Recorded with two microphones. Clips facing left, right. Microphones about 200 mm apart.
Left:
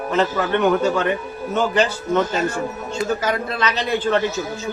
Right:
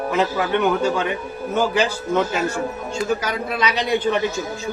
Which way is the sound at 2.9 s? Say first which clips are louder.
Left 2 dB; 10° right (ahead or behind).